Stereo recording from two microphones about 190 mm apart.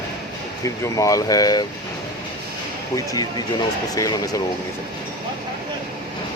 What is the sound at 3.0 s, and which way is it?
Speech, 20° left (ahead or behind).